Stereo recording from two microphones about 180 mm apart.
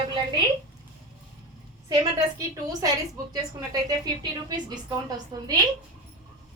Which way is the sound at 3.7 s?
20° right (ahead or behind).